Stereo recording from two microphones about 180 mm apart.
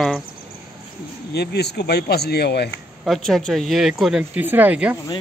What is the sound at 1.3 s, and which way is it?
Speech, 65° left (ahead or behind).